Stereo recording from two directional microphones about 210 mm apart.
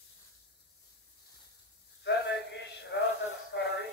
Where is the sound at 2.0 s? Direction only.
55° left (ahead or behind).